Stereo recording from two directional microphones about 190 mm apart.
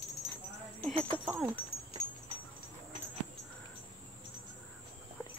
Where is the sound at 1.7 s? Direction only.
30° left (ahead or behind).